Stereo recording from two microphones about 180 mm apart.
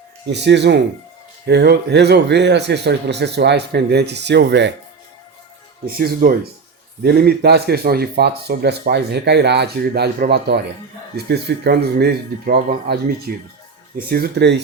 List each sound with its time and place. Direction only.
0.3 s speech: 75° right (ahead or behind)
5.8 s speech: 55° right (ahead or behind)